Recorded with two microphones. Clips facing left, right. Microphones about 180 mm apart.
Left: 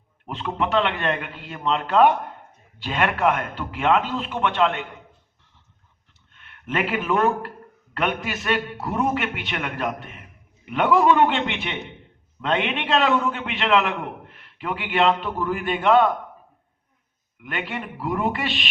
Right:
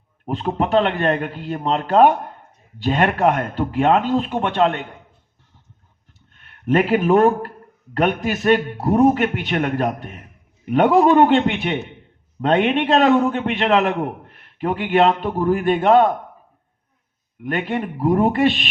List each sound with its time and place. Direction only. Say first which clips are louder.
0.3 s a man's voice: right 5 dB; 40° right (ahead or behind)
6.3 s a man's voice: right 9 dB; 40° right (ahead or behind)
17.4 s a man's voice: right 8 dB; 45° right (ahead or behind)